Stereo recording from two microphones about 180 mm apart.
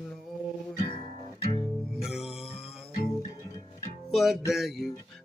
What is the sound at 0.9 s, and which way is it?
Music, 25° left (ahead or behind).